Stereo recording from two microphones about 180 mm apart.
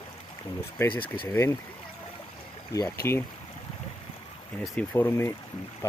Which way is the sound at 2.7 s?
15° left (ahead or behind).